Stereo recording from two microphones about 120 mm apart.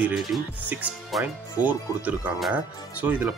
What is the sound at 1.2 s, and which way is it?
Speech, 15° right (ahead or behind).